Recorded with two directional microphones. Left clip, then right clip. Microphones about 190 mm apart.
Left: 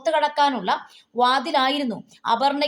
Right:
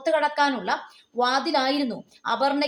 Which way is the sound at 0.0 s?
30° left (ahead or behind).